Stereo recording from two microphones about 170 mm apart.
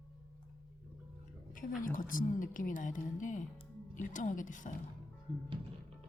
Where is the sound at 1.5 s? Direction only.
50° left (ahead or behind).